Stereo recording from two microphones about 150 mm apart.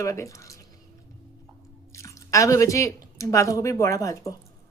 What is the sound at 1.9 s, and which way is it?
Speech, 20° left (ahead or behind).